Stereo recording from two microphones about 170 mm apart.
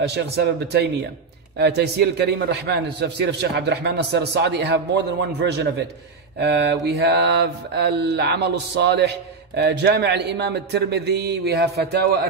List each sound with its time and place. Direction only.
0.0 s a man's voice: 75° right (ahead or behind)
1.6 s mantra: 75° right (ahead or behind)
6.4 s a man's voice: 80° right
7.0 s mantra: 80° right